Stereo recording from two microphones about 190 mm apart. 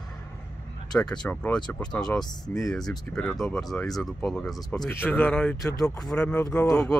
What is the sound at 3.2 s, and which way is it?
Speech, centre (ahead or behind).